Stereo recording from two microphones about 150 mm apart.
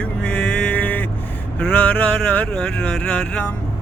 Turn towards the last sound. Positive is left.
turn(degrees=10)  # may be behind; listen again after turning